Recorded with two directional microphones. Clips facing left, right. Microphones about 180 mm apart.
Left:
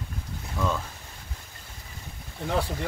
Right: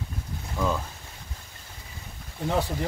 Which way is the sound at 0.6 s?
10° right (ahead or behind).